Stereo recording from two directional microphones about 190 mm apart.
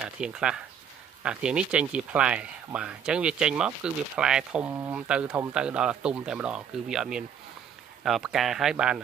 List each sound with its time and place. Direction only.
0.0 s speech: 5° right (ahead or behind)